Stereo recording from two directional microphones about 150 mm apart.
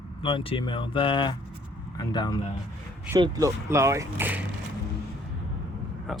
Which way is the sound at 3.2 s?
25° right (ahead or behind).